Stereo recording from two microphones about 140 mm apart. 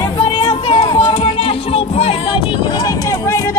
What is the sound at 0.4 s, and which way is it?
Music, 40° left (ahead or behind).